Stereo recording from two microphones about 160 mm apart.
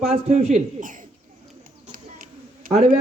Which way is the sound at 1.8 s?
60° right (ahead or behind).